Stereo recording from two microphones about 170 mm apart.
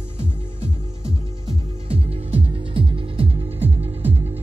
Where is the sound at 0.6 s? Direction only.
35° right (ahead or behind).